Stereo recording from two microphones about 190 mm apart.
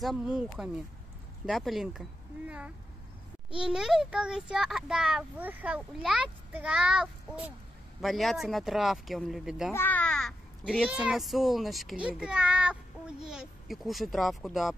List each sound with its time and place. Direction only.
0.0 s a child's voice: 5° right (ahead or behind)
9.8 s a child's voice: 10° left (ahead or behind)